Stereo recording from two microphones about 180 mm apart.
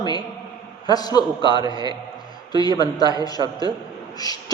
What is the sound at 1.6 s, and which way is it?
Speech, 25° right (ahead or behind).